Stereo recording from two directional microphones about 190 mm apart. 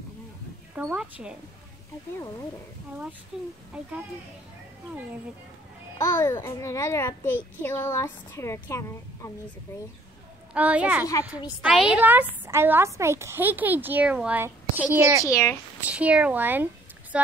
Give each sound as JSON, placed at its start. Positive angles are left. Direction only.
{"t": 0.7, "sound": "a woman's voice", "side_deg": -5}
{"t": 3.3, "sound": "a woman's voice", "side_deg": -5}
{"t": 5.9, "sound": "a woman's voice", "side_deg": 15}
{"t": 10.5, "sound": "a woman's voice", "side_deg": -5}
{"t": 15.2, "sound": "a woman's voice", "side_deg": 20}
{"t": 15.8, "sound": "a woman's voice", "side_deg": -5}